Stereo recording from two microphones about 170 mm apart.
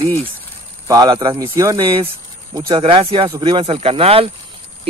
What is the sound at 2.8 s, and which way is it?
Speech, 35° right (ahead or behind).